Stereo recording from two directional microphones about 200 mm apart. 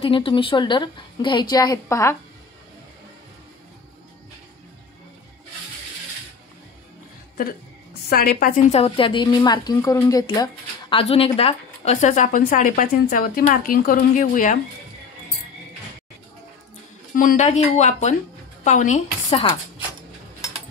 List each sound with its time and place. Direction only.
0.0 s a woman's voice: 25° left (ahead or behind)
8.1 s a woman's voice: 45° left (ahead or behind)
8.7 s a woman's voice: 30° left (ahead or behind)
17.1 s a woman's voice: 45° left (ahead or behind)